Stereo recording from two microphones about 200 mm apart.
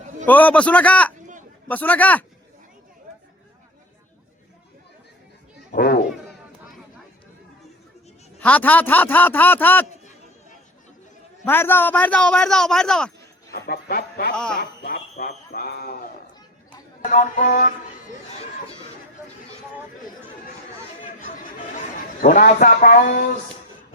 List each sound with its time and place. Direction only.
0.3 s a man's voice: 10° left (ahead or behind)
5.7 s children playing: 50° left (ahead or behind)
8.4 s a man's voice: 5° left (ahead or behind)
11.4 s a man's voice: 10° left (ahead or behind)
13.5 s speech: 50° left (ahead or behind)
14.3 s a man's voice: 5° left (ahead or behind)
14.6 s a man's voice: 60° left (ahead or behind)
17.0 s speech: 40° left (ahead or behind)
22.2 s a man's voice: 40° left (ahead or behind)